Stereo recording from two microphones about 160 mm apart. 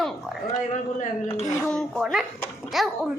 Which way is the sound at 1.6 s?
Centre (ahead or behind).